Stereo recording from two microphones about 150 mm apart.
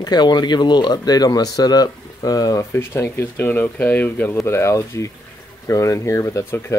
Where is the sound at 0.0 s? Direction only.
30° left (ahead or behind).